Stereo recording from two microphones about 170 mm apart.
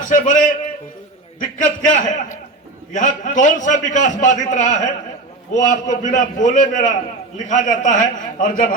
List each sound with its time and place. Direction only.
0.1 s a man's voice: 50° left (ahead or behind)